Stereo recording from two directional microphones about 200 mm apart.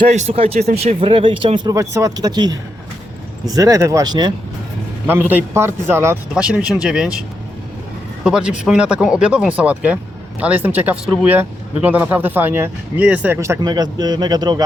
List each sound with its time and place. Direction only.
0.0 s speech: 35° right (ahead or behind)
5.0 s speech: 10° right (ahead or behind)
8.2 s speech: 5° right (ahead or behind); by 14.6 s 20° right (ahead or behind)